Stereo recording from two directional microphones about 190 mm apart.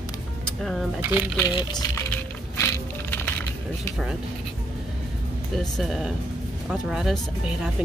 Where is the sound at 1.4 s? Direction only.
20° left (ahead or behind).